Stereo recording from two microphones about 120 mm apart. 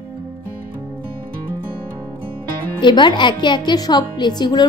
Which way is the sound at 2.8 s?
40° left (ahead or behind).